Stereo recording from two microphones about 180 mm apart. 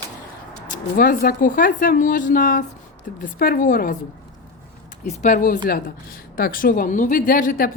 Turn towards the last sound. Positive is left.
turn(degrees=50)  # may be behind; listen again after turning